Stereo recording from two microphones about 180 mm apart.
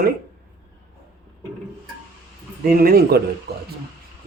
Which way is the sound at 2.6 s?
55° right (ahead or behind).